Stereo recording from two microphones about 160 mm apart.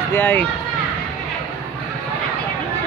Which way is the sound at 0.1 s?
10° left (ahead or behind).